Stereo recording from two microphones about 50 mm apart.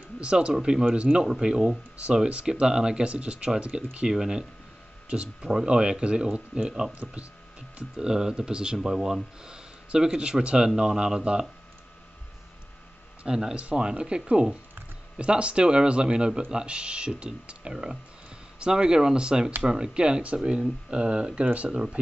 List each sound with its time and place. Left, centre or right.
0.2 s speech: right
1.2 s speech: centre
13.2 s speech: centre